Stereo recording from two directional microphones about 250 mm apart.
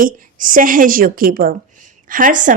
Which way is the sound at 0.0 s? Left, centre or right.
Right.